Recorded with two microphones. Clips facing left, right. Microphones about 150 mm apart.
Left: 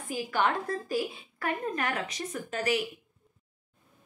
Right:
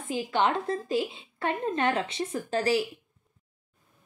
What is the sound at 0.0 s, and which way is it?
A woman's voice, 25° right (ahead or behind).